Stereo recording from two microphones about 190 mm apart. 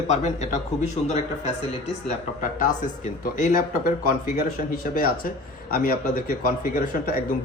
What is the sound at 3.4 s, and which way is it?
Speech, 45° left (ahead or behind).